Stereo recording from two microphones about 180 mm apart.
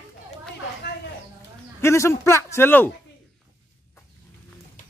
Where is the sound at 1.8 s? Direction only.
15° left (ahead or behind).